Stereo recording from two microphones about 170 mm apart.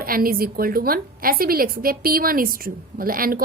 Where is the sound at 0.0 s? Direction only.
60° right (ahead or behind).